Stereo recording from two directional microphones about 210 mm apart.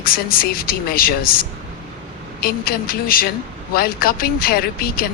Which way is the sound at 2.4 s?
45° left (ahead or behind).